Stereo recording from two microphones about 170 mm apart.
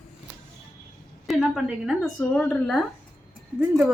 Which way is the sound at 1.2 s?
Centre (ahead or behind).